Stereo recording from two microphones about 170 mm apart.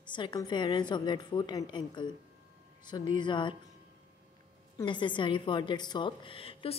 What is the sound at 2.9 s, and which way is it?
Speech, 25° left (ahead or behind).